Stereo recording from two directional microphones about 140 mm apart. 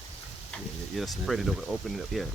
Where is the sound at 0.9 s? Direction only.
Centre (ahead or behind).